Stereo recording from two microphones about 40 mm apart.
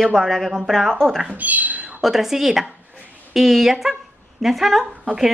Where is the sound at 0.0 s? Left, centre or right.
Centre.